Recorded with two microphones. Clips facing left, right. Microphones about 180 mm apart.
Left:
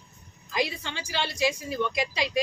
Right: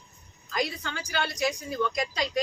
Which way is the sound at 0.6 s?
25° left (ahead or behind).